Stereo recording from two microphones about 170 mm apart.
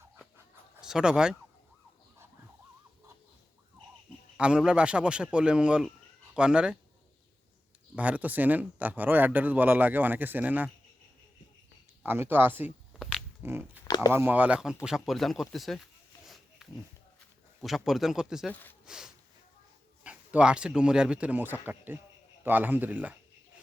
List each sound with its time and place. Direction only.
0.8 s speech: 5° right (ahead or behind)
4.4 s speech: 5° right (ahead or behind)
7.9 s speech: 10° right (ahead or behind)
12.0 s speech: 15° right (ahead or behind)
13.0 s dog: centre (ahead or behind)
13.4 s speech: 15° right (ahead or behind)
13.8 s a sound: 20° left (ahead or behind)
14.1 s speech: 10° right (ahead or behind)
14.8 s a sound: centre (ahead or behind)
17.6 s speech: centre (ahead or behind)